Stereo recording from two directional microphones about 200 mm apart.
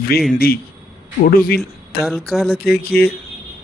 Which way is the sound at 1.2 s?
45° left (ahead or behind).